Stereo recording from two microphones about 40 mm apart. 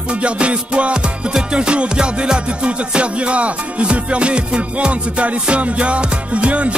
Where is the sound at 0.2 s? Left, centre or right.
Right.